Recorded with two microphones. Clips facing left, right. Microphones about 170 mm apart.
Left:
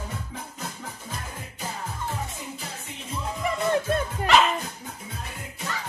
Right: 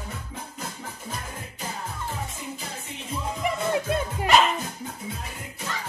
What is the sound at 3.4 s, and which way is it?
Music, 15° right (ahead or behind).